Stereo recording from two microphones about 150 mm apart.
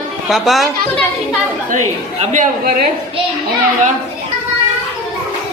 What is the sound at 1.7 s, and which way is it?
A woman's voice, 55° right (ahead or behind).